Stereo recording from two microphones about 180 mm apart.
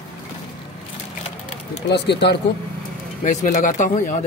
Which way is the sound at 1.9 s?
70° left (ahead or behind).